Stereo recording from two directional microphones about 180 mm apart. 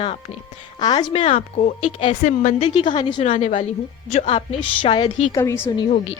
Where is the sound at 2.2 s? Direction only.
45° left (ahead or behind).